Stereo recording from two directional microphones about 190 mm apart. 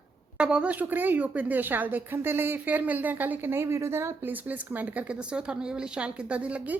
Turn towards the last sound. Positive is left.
turn(degrees=-5)  # may be behind; listen again after turning